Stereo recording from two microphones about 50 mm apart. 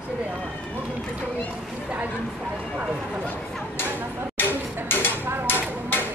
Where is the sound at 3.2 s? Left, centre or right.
Left.